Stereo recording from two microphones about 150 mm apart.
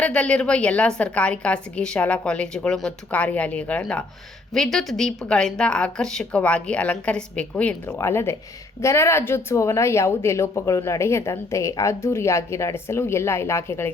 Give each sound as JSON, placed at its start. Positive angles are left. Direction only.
{"t": 0.0, "sound": "speech", "side_deg": 5}